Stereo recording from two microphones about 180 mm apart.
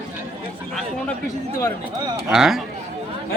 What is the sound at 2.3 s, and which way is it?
Speech, 5° right (ahead or behind).